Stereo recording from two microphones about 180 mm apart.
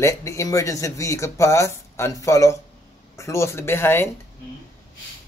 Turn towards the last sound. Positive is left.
turn(degrees=15)  # may be behind; listen again after turning